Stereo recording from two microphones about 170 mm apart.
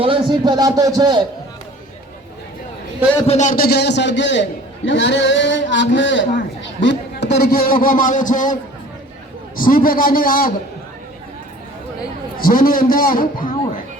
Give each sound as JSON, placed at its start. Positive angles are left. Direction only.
{"t": 0.0, "sound": "a man's voice", "side_deg": -30}
{"t": 3.2, "sound": "a man's voice", "side_deg": 45}
{"t": 9.6, "sound": "a man's voice", "side_deg": 55}
{"t": 12.4, "sound": "a man's voice", "side_deg": 55}